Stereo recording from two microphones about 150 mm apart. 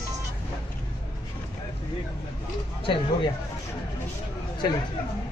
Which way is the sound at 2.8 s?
35° left (ahead or behind).